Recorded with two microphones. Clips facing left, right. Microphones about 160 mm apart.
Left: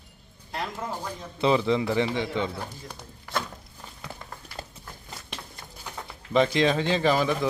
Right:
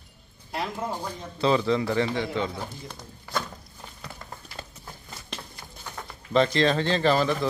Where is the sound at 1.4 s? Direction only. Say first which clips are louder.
Even; 15° left (ahead or behind).